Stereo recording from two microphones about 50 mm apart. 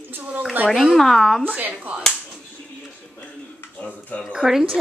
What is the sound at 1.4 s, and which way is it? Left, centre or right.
Speech, right.